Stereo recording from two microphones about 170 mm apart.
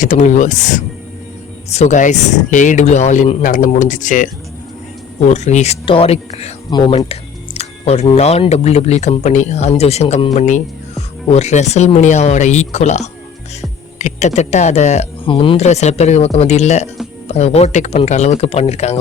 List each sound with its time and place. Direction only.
0.0 s speech: 45° left (ahead or behind)
5.3 s speech: 40° left (ahead or behind)
6.7 s speech: 25° left (ahead or behind)
7.0 s speech: 35° left (ahead or behind)
15.3 s speech: 30° left (ahead or behind)